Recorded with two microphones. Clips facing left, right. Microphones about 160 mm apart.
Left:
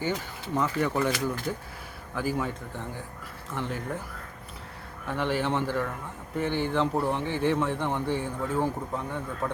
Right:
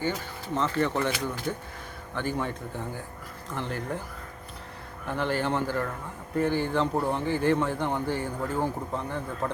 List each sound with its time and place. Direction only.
0.5 s a man's voice: 10° left (ahead or behind)
5.0 s a man's voice: centre (ahead or behind)